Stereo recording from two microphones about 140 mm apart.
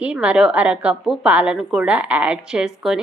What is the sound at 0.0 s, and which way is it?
A woman's voice, 10° right (ahead or behind).